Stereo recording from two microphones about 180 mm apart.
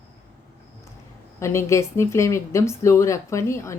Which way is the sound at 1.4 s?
15° left (ahead or behind).